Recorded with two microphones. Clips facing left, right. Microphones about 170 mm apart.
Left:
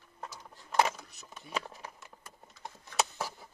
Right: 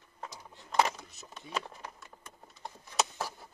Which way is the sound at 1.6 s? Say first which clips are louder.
Even; 10° left (ahead or behind).